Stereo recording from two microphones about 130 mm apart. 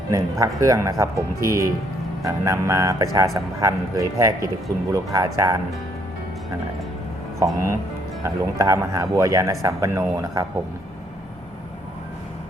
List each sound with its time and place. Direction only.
0.1 s speech: 25° right (ahead or behind)
7.3 s speech: 25° right (ahead or behind)